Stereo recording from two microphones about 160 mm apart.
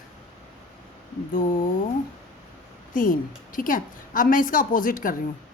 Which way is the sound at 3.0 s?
60° left (ahead or behind).